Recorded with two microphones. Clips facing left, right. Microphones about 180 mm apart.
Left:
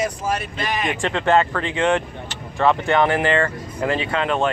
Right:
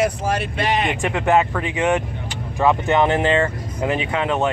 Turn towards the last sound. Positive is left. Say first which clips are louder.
# even
turn(degrees=-15)  # may be behind; listen again after turning